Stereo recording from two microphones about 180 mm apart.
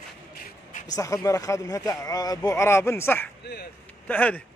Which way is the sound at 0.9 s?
20° left (ahead or behind).